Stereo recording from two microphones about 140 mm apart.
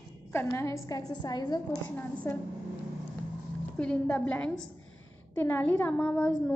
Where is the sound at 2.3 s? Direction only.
15° left (ahead or behind).